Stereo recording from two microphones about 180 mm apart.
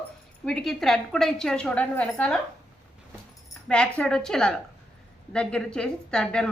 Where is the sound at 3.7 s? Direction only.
5° left (ahead or behind).